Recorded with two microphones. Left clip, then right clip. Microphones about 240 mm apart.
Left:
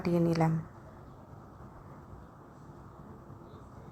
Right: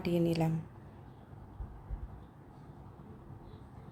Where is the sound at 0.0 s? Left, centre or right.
Centre.